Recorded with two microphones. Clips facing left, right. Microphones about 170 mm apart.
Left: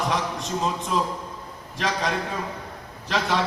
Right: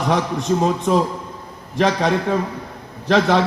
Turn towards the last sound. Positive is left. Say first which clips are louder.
# right 9 dB
turn(degrees=-60)  # may be behind; listen again after turning